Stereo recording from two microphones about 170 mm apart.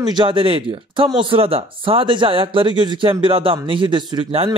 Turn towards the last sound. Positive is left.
turn(degrees=-30)  # may be behind; listen again after turning